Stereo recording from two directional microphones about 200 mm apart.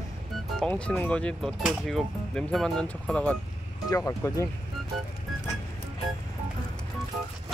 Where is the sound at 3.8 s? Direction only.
15° left (ahead or behind).